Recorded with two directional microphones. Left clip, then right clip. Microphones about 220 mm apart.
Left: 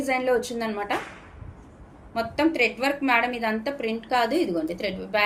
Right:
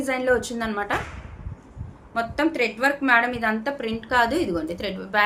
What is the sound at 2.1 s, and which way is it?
A woman's voice, 15° right (ahead or behind).